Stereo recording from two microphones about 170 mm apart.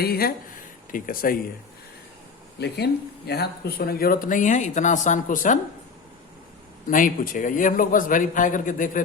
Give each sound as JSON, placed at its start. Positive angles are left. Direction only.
{"t": 0.0, "sound": "speech", "side_deg": 65}
{"t": 2.6, "sound": "speech", "side_deg": 75}
{"t": 6.8, "sound": "a man's voice", "side_deg": 55}